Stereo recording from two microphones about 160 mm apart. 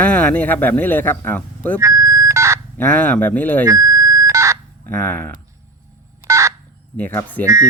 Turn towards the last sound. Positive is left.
turn(degrees=10)  # may be behind; listen again after turning